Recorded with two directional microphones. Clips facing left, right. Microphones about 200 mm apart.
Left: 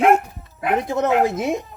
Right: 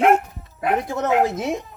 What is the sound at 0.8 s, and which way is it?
Speech, 20° left (ahead or behind).